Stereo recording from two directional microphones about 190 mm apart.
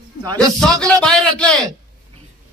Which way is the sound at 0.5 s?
5° left (ahead or behind).